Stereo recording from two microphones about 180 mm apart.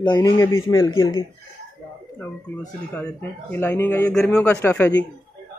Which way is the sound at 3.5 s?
10° left (ahead or behind).